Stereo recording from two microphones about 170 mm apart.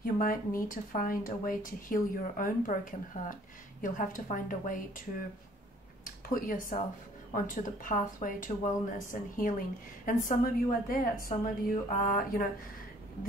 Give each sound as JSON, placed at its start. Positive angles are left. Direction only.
{"t": 0.0, "sound": "speech", "side_deg": 55}
{"t": 6.0, "sound": "speech", "side_deg": 55}